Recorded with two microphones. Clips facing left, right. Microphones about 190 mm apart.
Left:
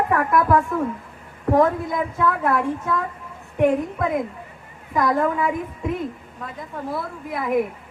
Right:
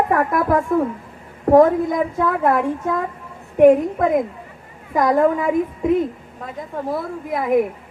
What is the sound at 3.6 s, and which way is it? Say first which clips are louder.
A woman's voice: right 7 dB; 45° right (ahead or behind).